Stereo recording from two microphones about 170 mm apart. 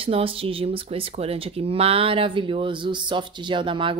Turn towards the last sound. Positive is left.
turn(degrees=-30)  # may be behind; listen again after turning